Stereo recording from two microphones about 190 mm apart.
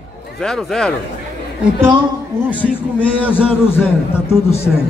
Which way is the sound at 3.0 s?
10° left (ahead or behind).